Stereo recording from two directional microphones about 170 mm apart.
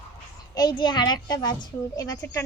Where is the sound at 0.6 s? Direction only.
25° left (ahead or behind).